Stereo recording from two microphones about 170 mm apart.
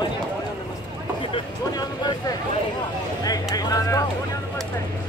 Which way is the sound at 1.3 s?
25° left (ahead or behind).